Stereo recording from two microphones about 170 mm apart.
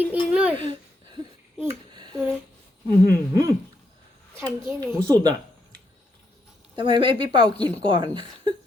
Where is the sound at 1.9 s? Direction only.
25° right (ahead or behind).